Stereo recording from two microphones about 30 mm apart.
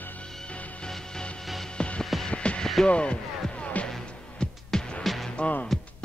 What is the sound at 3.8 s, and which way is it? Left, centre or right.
Music, left.